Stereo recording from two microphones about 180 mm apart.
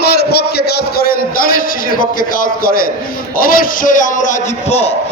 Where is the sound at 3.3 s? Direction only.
50° left (ahead or behind).